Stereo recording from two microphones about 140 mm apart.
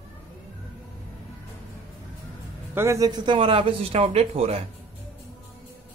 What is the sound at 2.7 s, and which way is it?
Speech, 20° right (ahead or behind).